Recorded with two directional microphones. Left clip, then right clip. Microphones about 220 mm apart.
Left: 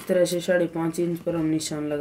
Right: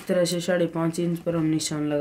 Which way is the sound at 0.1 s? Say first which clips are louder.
Left 2 dB; 35° right (ahead or behind).